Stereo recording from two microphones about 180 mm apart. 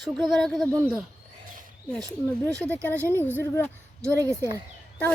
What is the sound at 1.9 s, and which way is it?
Speech, 5° left (ahead or behind).